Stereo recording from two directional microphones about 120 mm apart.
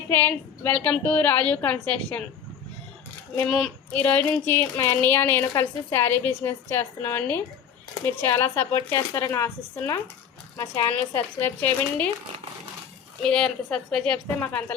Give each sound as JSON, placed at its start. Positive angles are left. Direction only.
{"t": 0.1, "sound": "a woman's voice", "side_deg": 15}
{"t": 3.9, "sound": "a woman's voice", "side_deg": 10}
{"t": 13.2, "sound": "a woman's voice", "side_deg": 5}
{"t": 14.3, "sound": "a woman's voice", "side_deg": 15}